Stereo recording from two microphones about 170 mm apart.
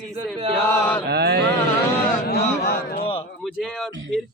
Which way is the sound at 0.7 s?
10° left (ahead or behind).